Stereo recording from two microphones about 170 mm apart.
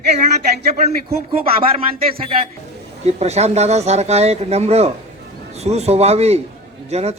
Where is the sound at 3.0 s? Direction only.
40° right (ahead or behind).